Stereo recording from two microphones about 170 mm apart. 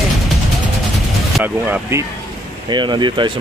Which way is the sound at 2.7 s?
25° right (ahead or behind).